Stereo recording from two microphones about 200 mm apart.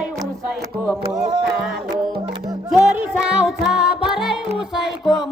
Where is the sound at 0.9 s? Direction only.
5° right (ahead or behind).